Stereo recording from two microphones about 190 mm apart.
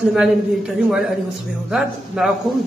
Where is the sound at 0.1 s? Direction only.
Centre (ahead or behind).